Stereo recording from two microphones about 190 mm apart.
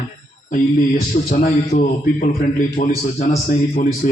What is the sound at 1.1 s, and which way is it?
A man's voice, 40° left (ahead or behind).